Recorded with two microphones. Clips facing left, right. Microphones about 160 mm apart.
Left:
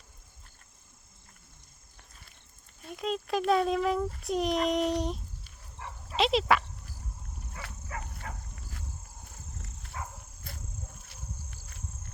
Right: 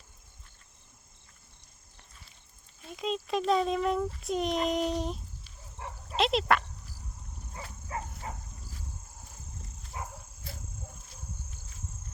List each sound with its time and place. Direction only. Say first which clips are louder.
2.9 s a child's voice: even; centre (ahead or behind)
7.9 s a sound: right 4 dB; 30° right (ahead or behind)
9.8 s dog: right 1 dB; 65° left (ahead or behind)